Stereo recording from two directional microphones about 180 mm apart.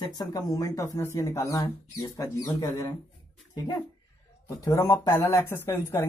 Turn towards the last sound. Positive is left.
turn(degrees=15)  # may be behind; listen again after turning